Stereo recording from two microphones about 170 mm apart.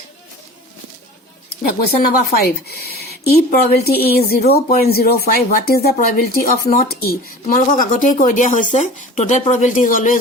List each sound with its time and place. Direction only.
1.6 s speech: 60° left (ahead or behind)